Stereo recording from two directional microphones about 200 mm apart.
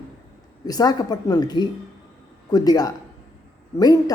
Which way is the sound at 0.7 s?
20° left (ahead or behind).